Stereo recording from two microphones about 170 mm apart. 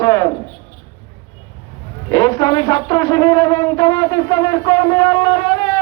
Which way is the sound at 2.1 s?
20° left (ahead or behind).